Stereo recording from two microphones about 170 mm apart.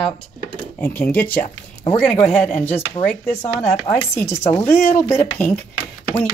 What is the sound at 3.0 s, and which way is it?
Speech, 25° left (ahead or behind).